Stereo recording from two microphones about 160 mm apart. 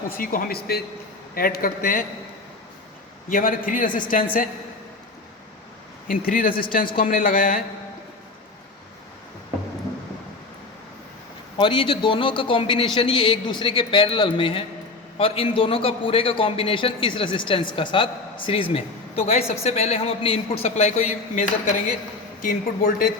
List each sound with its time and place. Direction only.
0.2 s speech: 60° left (ahead or behind)
3.2 s speech: 60° left (ahead or behind)
6.1 s speech: 60° left (ahead or behind)
11.6 s a man's voice: 30° left (ahead or behind); by 23.1 s 60° left (ahead or behind)